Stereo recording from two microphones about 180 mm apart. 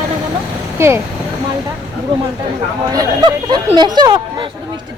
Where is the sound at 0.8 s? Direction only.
15° right (ahead or behind).